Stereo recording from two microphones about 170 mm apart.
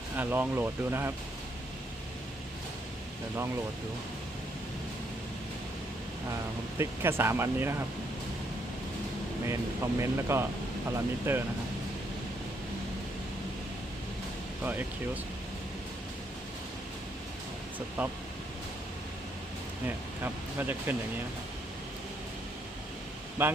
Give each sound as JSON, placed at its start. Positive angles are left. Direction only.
{"t": 0.2, "sound": "speech", "side_deg": -10}
{"t": 6.7, "sound": "speech", "side_deg": -15}
{"t": 9.5, "sound": "speech", "side_deg": -15}
{"t": 14.6, "sound": "speech", "side_deg": -10}
{"t": 17.7, "sound": "speech", "side_deg": -10}
{"t": 20.2, "sound": "speech", "side_deg": -10}
{"t": 23.4, "sound": "speech", "side_deg": -15}